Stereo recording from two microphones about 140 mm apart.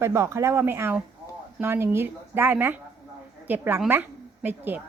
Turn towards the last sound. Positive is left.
turn(degrees=-15)  # may be behind; listen again after turning